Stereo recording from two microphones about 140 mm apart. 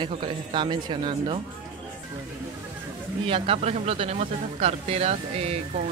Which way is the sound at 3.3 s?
45° right (ahead or behind).